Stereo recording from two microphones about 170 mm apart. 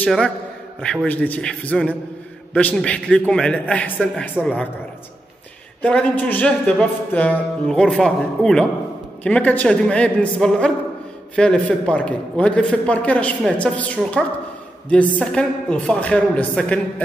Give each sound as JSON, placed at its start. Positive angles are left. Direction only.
{"t": 0.0, "sound": "a man's voice", "side_deg": 5}
{"t": 5.8, "sound": "a man's voice", "side_deg": 10}